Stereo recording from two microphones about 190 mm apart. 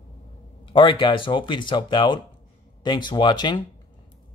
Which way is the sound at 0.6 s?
25° left (ahead or behind).